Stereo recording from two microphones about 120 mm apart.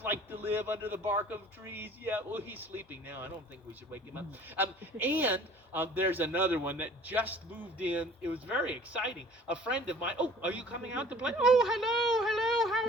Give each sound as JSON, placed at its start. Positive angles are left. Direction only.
{"t": 0.0, "sound": "speech", "side_deg": -15}
{"t": 4.5, "sound": "speech", "side_deg": -15}